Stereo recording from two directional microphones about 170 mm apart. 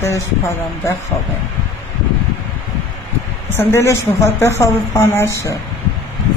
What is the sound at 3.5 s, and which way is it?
A woman's voice, 15° left (ahead or behind).